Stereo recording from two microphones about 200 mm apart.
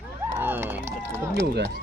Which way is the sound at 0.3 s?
10° right (ahead or behind).